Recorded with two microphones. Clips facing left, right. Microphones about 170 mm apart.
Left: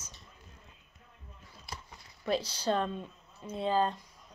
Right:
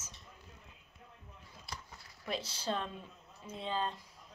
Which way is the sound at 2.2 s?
Centre (ahead or behind).